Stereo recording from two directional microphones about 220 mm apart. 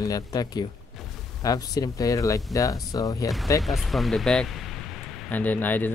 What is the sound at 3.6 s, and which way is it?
Speech, centre (ahead or behind).